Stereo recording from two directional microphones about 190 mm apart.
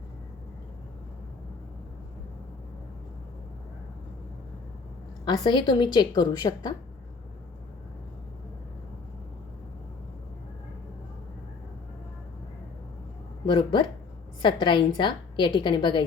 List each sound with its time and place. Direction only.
5.2 s a woman's voice: 25° left (ahead or behind)
13.4 s a woman's voice: 25° left (ahead or behind)